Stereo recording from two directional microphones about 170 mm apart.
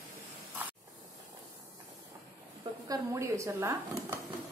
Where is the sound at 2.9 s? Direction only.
20° right (ahead or behind).